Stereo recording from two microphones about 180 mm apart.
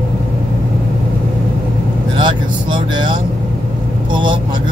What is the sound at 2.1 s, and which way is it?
Vehicle, 25° right (ahead or behind).